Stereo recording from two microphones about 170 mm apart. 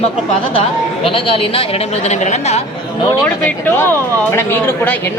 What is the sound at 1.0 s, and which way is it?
Speech, 30° left (ahead or behind).